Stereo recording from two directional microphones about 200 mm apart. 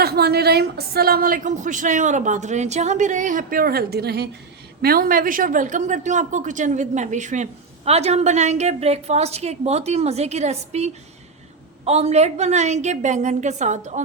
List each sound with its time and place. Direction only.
0.0 s speech: 50° right (ahead or behind); by 14.0 s 35° right (ahead or behind)